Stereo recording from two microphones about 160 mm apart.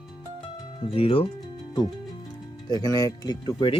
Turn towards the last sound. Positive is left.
turn(degrees=30)  # may be behind; listen again after turning